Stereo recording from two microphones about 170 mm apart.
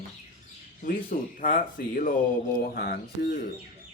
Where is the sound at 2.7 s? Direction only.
70° left (ahead or behind).